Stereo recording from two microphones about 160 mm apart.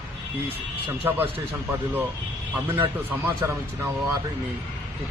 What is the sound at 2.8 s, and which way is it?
Speech, 10° right (ahead or behind).